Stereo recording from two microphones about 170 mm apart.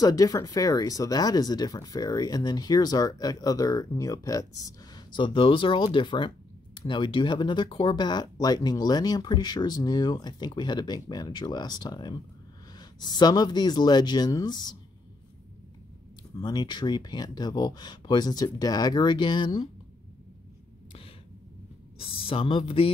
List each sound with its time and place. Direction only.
0.0 s speech: 20° left (ahead or behind)
16.3 s speech: 25° left (ahead or behind)
21.9 s speech: 30° left (ahead or behind)